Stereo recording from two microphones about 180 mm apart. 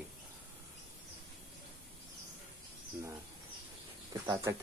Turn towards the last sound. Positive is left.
turn(degrees=-15)  # may be behind; listen again after turning